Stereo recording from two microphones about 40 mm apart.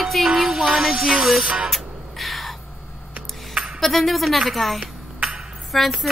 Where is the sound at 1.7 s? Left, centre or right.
Centre.